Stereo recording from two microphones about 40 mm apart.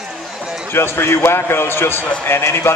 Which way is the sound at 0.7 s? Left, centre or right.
Left.